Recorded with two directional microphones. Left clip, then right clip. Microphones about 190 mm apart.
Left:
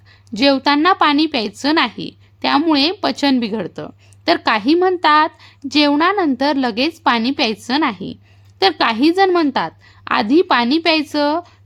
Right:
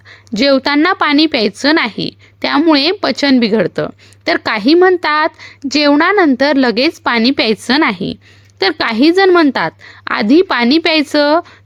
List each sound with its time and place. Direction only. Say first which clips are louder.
0.1 s a woman's voice: right 4 dB; 10° right (ahead or behind)